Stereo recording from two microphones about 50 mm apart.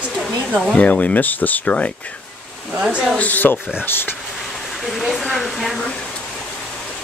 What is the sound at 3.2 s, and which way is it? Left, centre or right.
Speech, left.